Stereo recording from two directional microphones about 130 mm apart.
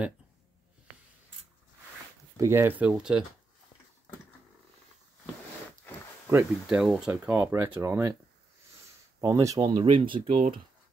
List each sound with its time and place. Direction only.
2.3 s speech: 20° right (ahead or behind); by 3.3 s 5° right (ahead or behind)
6.2 s speech: 15° right (ahead or behind)
6.8 s speech: 5° right (ahead or behind); by 8.2 s 20° right (ahead or behind)
9.2 s speech: 25° right (ahead or behind)
9.7 s speech: 40° right (ahead or behind)